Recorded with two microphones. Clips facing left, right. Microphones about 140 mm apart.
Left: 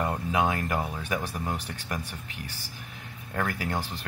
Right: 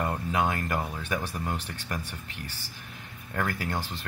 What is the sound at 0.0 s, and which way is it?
Speech, 5° left (ahead or behind).